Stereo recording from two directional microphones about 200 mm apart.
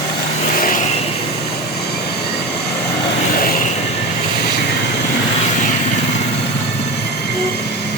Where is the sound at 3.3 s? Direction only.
45° left (ahead or behind).